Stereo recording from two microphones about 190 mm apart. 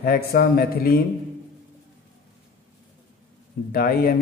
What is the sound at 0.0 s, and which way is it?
Speech, 55° left (ahead or behind).